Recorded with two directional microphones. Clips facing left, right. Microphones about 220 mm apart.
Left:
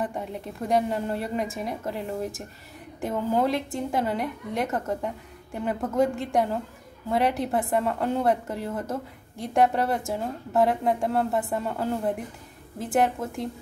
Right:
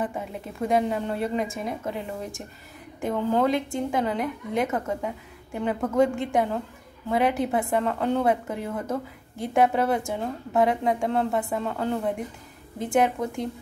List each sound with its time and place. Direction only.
0.0 s a woman's voice: centre (ahead or behind)